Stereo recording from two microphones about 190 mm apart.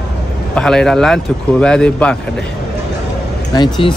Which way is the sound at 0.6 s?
5° left (ahead or behind).